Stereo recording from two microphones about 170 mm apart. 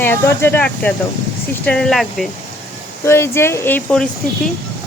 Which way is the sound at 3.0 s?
15° left (ahead or behind).